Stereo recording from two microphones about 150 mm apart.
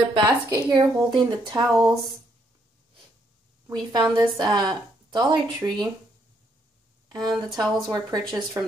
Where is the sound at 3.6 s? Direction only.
25° right (ahead or behind).